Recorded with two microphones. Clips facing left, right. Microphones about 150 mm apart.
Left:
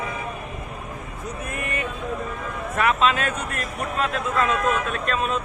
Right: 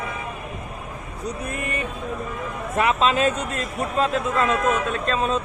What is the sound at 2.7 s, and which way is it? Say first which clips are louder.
Speech: right 1 dB; 30° right (ahead or behind).